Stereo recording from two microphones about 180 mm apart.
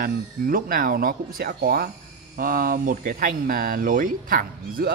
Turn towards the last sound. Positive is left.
turn(degrees=-50)  # may be behind; listen again after turning